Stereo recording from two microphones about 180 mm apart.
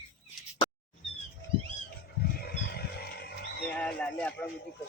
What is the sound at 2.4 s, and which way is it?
Wild animals, 60° left (ahead or behind).